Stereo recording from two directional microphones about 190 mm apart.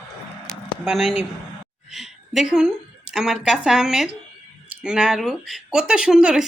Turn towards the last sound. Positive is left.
turn(degrees=-5)  # may be behind; listen again after turning